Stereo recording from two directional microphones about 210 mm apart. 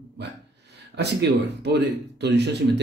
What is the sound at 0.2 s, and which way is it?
Speech, 55° right (ahead or behind).